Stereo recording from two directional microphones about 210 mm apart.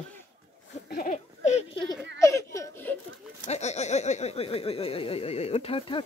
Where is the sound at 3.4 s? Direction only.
30° left (ahead or behind).